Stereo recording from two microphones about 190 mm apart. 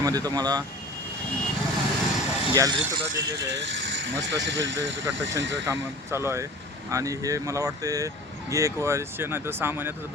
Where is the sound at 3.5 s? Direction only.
70° right (ahead or behind).